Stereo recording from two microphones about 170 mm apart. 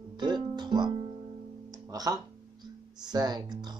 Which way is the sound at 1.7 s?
20° right (ahead or behind).